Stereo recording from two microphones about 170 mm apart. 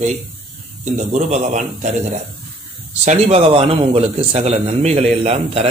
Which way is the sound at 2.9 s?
40° right (ahead or behind).